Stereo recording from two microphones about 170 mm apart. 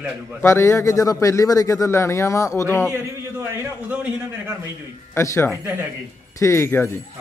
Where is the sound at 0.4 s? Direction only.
15° left (ahead or behind).